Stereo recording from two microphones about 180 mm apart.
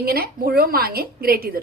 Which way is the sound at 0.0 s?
60° right (ahead or behind).